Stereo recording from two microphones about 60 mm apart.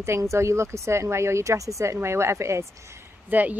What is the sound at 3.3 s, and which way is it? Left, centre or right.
Speech, right.